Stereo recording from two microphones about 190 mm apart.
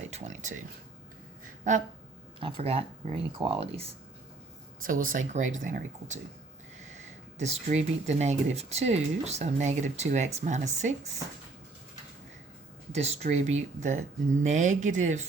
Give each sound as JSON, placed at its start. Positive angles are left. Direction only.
{"t": 0.0, "sound": "speech", "side_deg": -40}
{"t": 2.4, "sound": "speech", "side_deg": -30}
{"t": 4.8, "sound": "speech", "side_deg": -45}
{"t": 7.3, "sound": "speech", "side_deg": -35}
{"t": 12.9, "sound": "speech", "side_deg": -35}